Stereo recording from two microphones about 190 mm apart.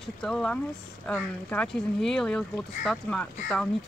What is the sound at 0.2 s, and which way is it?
Speech, 5° left (ahead or behind).